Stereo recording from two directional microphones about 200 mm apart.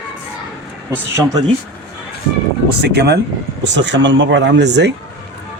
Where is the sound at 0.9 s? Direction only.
20° right (ahead or behind).